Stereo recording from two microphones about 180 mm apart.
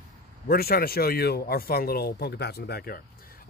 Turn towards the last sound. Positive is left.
turn(degrees=55)  # may be behind; listen again after turning